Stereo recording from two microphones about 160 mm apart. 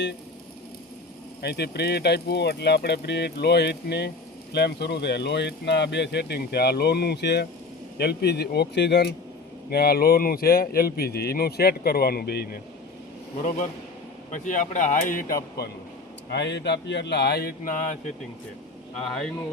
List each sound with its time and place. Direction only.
1.4 s speech: 90° left
9.6 s speech: 75° left (ahead or behind); by 12.5 s 90° left
14.3 s speech: 50° left (ahead or behind)
15.6 s a man's voice: 85° left; by 18.1 s 50° left (ahead or behind)
18.9 s speech: 5° left (ahead or behind)